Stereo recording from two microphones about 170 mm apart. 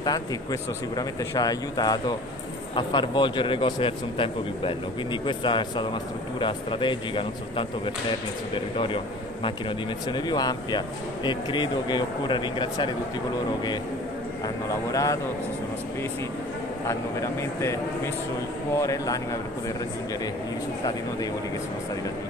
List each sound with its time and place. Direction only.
0.0 s a man's voice: 25° left (ahead or behind)
14.9 s speech: 20° left (ahead or behind)
16.8 s speech: 15° left (ahead or behind)